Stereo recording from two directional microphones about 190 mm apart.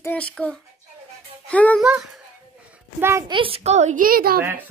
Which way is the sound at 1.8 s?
5° right (ahead or behind).